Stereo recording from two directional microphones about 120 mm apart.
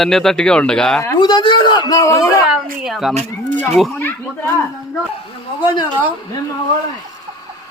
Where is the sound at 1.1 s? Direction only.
40° left (ahead or behind).